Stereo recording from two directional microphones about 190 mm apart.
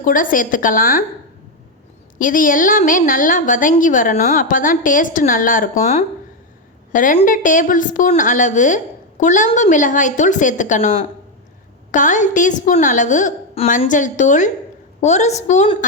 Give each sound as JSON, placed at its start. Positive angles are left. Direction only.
{"t": 0.0, "sound": "a woman's voice", "side_deg": 45}
{"t": 2.1, "sound": "a woman's voice", "side_deg": 45}